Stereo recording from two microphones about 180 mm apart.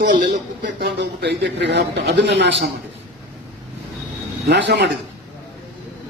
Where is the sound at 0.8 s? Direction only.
65° right (ahead or behind).